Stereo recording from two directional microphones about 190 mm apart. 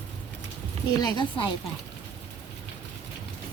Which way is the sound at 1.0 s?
20° left (ahead or behind).